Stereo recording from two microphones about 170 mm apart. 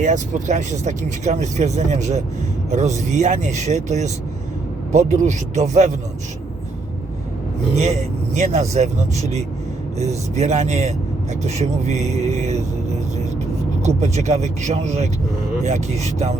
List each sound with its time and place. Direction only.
0.0 s speech: 45° right (ahead or behind)
8.4 s speech: 40° right (ahead or behind)
13.8 s speech: 40° right (ahead or behind)